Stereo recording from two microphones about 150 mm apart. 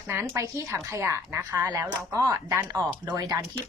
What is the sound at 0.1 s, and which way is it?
A woman's voice, 15° right (ahead or behind).